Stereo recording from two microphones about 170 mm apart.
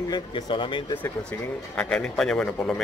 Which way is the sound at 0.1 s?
30° left (ahead or behind).